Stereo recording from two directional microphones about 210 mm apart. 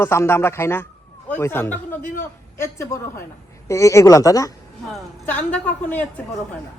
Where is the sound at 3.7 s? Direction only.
15° left (ahead or behind).